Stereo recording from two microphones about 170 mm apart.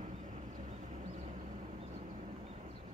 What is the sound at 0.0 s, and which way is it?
Vehicle, 45° right (ahead or behind).